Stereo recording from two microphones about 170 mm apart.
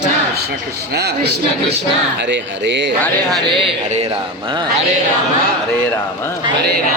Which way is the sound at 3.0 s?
Centre (ahead or behind).